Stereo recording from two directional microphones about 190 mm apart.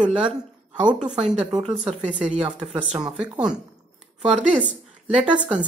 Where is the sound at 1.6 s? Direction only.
35° right (ahead or behind).